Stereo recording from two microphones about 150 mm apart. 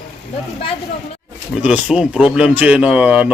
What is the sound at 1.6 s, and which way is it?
Speech, 5° right (ahead or behind).